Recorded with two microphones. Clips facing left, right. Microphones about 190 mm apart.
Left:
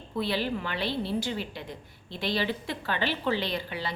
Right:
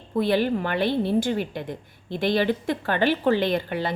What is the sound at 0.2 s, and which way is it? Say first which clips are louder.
A woman's voice: right 8 dB; 50° right (ahead or behind).